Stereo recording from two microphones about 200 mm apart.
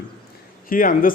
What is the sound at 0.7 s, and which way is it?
Speech, 45° left (ahead or behind).